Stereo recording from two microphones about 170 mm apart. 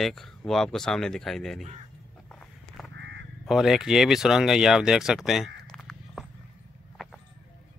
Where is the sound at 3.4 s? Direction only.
Centre (ahead or behind).